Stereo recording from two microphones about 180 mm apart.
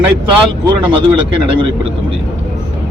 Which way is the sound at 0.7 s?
25° right (ahead or behind).